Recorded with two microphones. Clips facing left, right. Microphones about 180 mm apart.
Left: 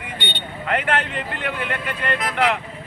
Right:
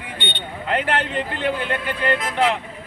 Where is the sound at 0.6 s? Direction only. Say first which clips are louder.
Even; 30° right (ahead or behind).